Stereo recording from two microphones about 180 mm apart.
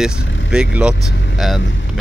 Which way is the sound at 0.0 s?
5° right (ahead or behind).